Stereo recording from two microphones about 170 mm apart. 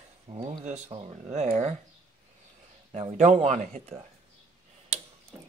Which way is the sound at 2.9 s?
40° right (ahead or behind).